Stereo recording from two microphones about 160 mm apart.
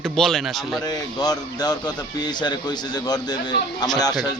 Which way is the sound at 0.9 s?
25° left (ahead or behind).